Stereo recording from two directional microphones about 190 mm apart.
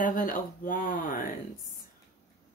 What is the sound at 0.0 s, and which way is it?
Speech, 45° left (ahead or behind).